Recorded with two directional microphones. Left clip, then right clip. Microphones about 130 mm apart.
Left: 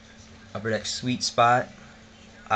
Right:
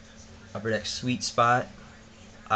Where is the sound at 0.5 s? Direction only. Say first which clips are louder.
Left 1 dB; 15° left (ahead or behind).